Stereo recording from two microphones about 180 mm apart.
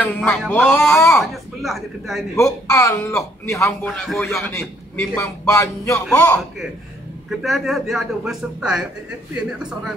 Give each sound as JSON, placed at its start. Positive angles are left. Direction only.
{"t": 0.0, "sound": "a man's voice", "side_deg": 10}
{"t": 1.2, "sound": "a man's voice", "side_deg": 0}
{"t": 2.3, "sound": "a man's voice", "side_deg": 15}
{"t": 7.2, "sound": "a man's voice", "side_deg": 0}